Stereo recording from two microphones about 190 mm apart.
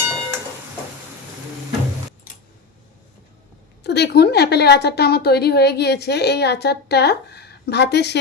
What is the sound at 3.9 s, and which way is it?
A woman's voice, 60° left (ahead or behind).